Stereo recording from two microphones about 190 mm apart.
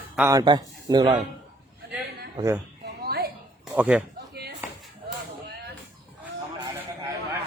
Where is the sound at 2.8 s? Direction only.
55° right (ahead or behind).